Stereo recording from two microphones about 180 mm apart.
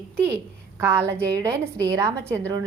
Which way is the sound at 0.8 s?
15° right (ahead or behind).